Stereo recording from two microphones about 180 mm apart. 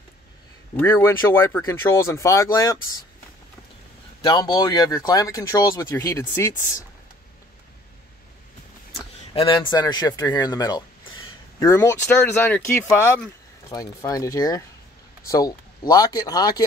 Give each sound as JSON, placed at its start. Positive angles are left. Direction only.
{"t": 0.7, "sound": "speech", "side_deg": 10}
{"t": 4.2, "sound": "speech", "side_deg": 25}
{"t": 9.3, "sound": "speech", "side_deg": 25}